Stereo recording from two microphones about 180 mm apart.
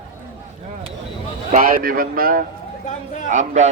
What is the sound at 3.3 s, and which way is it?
Speech, 40° right (ahead or behind).